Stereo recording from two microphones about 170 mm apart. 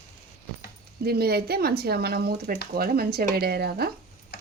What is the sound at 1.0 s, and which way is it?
Speech, 65° right (ahead or behind).